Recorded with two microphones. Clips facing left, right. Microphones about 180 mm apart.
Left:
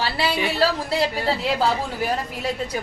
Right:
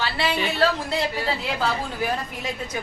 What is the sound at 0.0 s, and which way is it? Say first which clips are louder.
Speech: left 1 dB; 35° left (ahead or behind).